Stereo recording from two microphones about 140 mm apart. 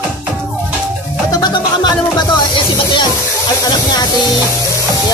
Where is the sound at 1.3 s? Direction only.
30° left (ahead or behind).